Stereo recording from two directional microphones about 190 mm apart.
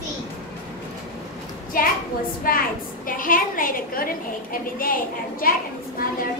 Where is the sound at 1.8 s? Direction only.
50° left (ahead or behind).